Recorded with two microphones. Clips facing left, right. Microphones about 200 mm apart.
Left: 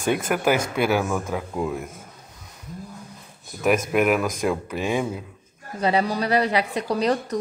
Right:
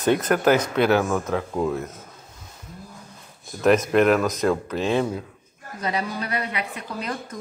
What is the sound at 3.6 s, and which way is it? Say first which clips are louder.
Speech: right 3 dB; 10° left (ahead or behind).